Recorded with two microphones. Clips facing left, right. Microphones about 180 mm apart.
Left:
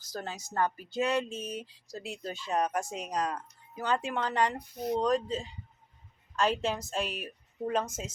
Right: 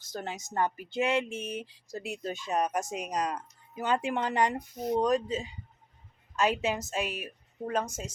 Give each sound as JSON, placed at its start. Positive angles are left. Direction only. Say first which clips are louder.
{"t": 0.0, "sound": "a woman's voice", "louder": "right 1 dB", "side_deg": -25}